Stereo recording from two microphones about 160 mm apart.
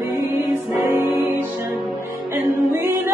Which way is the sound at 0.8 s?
15° right (ahead or behind).